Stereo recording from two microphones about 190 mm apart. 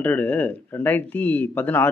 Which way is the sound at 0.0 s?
5° left (ahead or behind).